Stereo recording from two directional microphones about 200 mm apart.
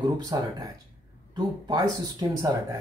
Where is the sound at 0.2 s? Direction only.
20° right (ahead or behind).